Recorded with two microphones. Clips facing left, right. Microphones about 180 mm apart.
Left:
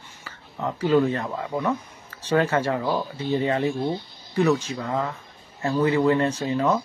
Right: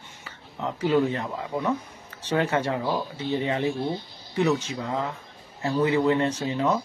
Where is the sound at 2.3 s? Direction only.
20° right (ahead or behind).